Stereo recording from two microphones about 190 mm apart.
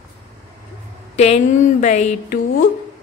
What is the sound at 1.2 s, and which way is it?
A woman's voice, 35° left (ahead or behind).